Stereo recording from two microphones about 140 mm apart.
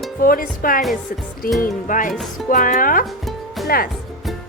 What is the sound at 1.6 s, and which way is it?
Speech, 70° left (ahead or behind).